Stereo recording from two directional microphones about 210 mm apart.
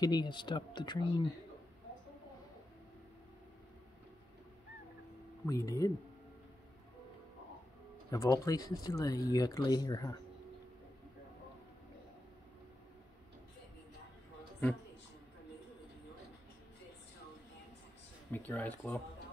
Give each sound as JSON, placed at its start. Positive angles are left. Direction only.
{"t": 0.0, "sound": "speech", "side_deg": 20}
{"t": 5.5, "sound": "speech", "side_deg": 15}
{"t": 8.1, "sound": "speech", "side_deg": 15}
{"t": 18.3, "sound": "speech", "side_deg": 10}